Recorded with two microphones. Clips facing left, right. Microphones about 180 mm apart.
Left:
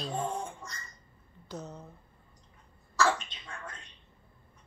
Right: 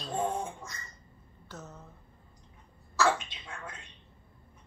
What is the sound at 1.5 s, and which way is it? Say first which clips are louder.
Speech: left 5 dB; 15° left (ahead or behind).